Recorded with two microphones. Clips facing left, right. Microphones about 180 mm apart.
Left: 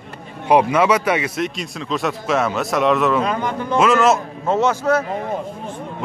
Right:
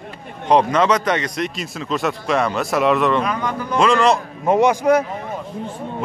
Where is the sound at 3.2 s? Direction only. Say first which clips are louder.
Left 1 dB; 25° left (ahead or behind).